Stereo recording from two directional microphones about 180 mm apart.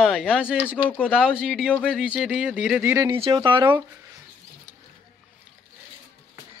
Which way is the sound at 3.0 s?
30° right (ahead or behind).